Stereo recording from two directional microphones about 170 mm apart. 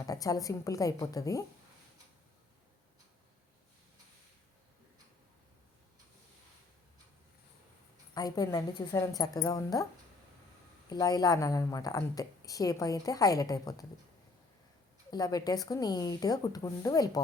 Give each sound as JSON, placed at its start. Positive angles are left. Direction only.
{"t": 0.0, "sound": "a woman's voice", "side_deg": 20}
{"t": 8.1, "sound": "a woman's voice", "side_deg": 20}
{"t": 10.8, "sound": "a woman's voice", "side_deg": 20}
{"t": 15.1, "sound": "a woman's voice", "side_deg": 25}